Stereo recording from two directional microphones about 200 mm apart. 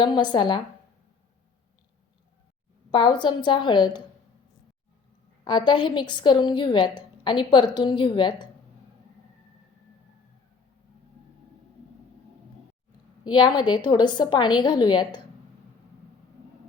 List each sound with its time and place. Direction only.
0.0 s a woman's voice: 20° left (ahead or behind)
2.9 s a woman's voice: 20° left (ahead or behind)
5.5 s a woman's voice: 25° left (ahead or behind)
13.2 s a woman's voice: 25° left (ahead or behind)